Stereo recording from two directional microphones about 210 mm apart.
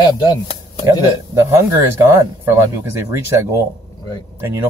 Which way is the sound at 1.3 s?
10° right (ahead or behind).